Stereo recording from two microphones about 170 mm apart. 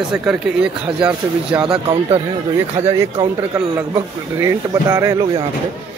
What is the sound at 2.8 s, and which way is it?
A man's voice, 15° right (ahead or behind).